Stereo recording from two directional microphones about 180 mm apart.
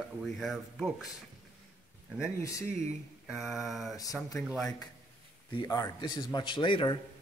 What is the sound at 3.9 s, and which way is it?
Speech, 20° left (ahead or behind).